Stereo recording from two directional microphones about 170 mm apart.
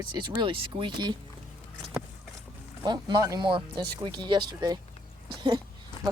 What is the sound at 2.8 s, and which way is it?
Speech, 20° right (ahead or behind).